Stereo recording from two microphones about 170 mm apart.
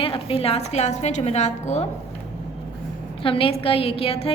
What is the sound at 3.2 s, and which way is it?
A woman's voice, 30° left (ahead or behind).